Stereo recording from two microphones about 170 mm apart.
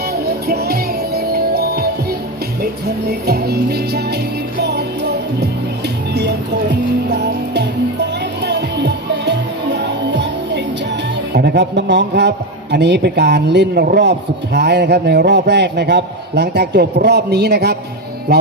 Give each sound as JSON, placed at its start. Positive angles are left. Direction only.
{"t": 0.1, "sound": "music", "side_deg": -70}
{"t": 11.3, "sound": "a man's voice", "side_deg": -90}
{"t": 18.3, "sound": "music", "side_deg": -75}